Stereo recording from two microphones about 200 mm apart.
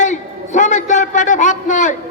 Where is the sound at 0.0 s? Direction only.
40° left (ahead or behind).